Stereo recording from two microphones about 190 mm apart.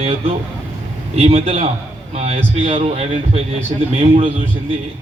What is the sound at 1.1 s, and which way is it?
A man's voice, 35° right (ahead or behind).